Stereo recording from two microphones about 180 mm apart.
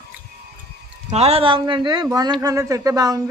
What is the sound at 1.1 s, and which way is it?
Speech, 35° right (ahead or behind).